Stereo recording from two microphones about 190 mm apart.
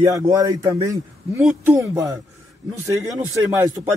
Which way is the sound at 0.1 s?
20° right (ahead or behind).